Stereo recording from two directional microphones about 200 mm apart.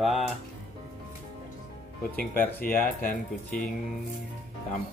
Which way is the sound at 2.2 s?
45° left (ahead or behind).